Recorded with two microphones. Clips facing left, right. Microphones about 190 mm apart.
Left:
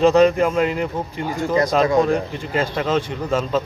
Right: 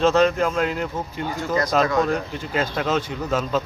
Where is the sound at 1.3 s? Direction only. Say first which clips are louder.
Left 4 dB; 15° left (ahead or behind).